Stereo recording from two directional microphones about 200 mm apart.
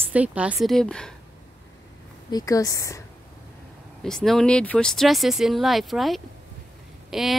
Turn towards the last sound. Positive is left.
turn(degrees=0)  # may be behind; listen again after turning